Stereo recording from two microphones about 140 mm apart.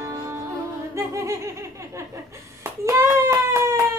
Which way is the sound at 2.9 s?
20° right (ahead or behind).